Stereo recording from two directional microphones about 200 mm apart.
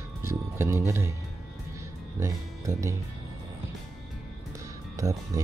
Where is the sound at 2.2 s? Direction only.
15° right (ahead or behind).